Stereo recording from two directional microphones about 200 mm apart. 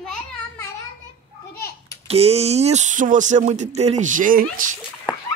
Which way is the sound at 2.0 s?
30° right (ahead or behind).